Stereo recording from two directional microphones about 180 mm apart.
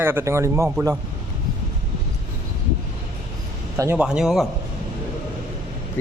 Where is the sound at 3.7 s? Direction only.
15° right (ahead or behind).